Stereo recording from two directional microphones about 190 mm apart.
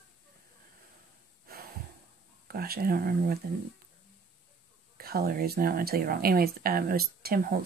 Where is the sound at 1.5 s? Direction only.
55° right (ahead or behind).